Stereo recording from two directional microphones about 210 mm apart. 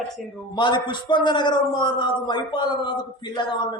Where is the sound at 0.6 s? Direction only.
20° left (ahead or behind).